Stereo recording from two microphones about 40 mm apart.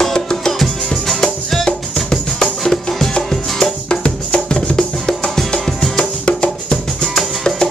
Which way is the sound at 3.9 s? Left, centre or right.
Left.